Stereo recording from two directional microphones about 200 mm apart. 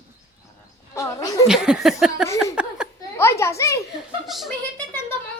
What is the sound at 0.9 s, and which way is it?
Speech, 15° left (ahead or behind).